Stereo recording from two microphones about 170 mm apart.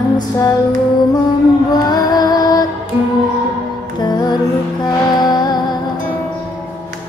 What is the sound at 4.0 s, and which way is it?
Music, 25° left (ahead or behind).